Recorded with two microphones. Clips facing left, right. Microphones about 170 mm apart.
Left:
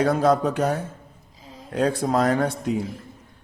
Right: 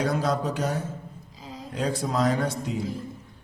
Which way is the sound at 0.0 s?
55° left (ahead or behind).